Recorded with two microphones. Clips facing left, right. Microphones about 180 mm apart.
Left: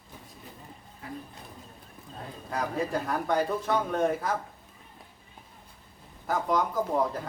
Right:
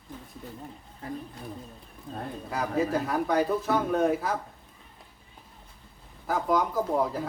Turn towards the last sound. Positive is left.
turn(degrees=0)  # may be behind; listen again after turning